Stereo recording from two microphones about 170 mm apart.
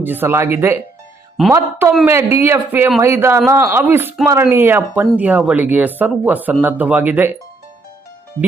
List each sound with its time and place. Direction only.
0.0 s speech: 10° right (ahead or behind)
1.4 s a man's voice: centre (ahead or behind)
2.0 s speech: 15° right (ahead or behind)